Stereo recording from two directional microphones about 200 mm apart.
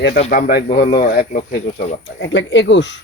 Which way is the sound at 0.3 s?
45° left (ahead or behind).